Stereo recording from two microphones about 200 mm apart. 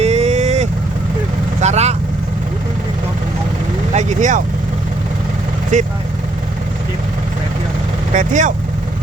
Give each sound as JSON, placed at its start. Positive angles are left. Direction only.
{"t": 0.0, "sound": "vehicle", "side_deg": -35}
{"t": 3.9, "sound": "vehicle", "side_deg": -35}
{"t": 5.7, "sound": "speech", "side_deg": -40}
{"t": 8.1, "sound": "speech", "side_deg": -40}